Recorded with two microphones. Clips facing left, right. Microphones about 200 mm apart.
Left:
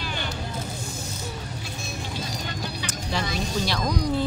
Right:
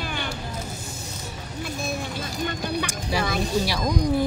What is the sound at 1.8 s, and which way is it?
Music, 55° right (ahead or behind).